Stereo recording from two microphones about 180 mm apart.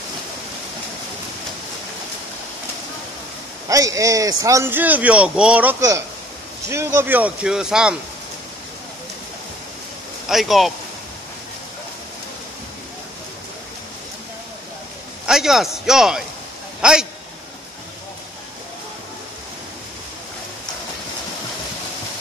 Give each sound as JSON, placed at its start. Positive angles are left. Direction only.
{"t": 3.6, "sound": "a man's voice", "side_deg": -20}
{"t": 10.2, "sound": "speech", "side_deg": 0}
{"t": 15.2, "sound": "a man's voice", "side_deg": 0}